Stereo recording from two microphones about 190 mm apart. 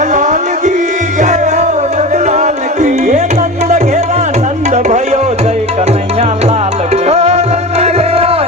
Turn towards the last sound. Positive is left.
turn(degrees=-35)  # may be behind; listen again after turning